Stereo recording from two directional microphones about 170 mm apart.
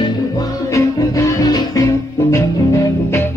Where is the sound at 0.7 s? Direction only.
20° left (ahead or behind).